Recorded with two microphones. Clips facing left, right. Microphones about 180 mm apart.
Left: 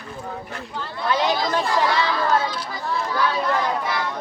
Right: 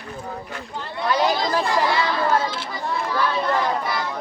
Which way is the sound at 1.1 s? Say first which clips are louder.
Right 1 dB; centre (ahead or behind).